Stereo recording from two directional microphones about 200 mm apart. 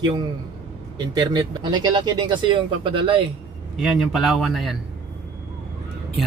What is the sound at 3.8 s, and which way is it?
Speech, centre (ahead or behind).